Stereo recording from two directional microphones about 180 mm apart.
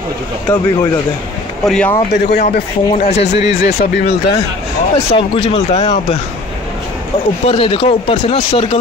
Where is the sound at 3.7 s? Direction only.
65° left (ahead or behind).